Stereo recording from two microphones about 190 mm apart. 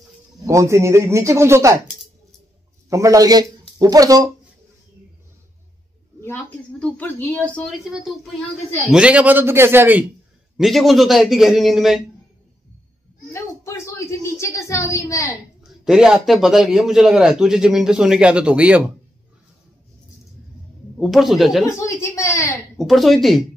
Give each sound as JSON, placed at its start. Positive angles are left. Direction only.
{"t": 0.5, "sound": "speech", "side_deg": -15}
{"t": 2.9, "sound": "a man's voice", "side_deg": -15}
{"t": 6.2, "sound": "speech", "side_deg": 10}
{"t": 8.9, "sound": "speech", "side_deg": -5}
{"t": 10.6, "sound": "a man's voice", "side_deg": 0}
{"t": 13.3, "sound": "a sound", "side_deg": 15}
{"t": 15.6, "sound": "a man's voice", "side_deg": 0}
{"t": 21.0, "sound": "a man's voice", "side_deg": 0}
{"t": 21.6, "sound": "a woman's voice", "side_deg": 15}
{"t": 22.8, "sound": "a man's voice", "side_deg": 0}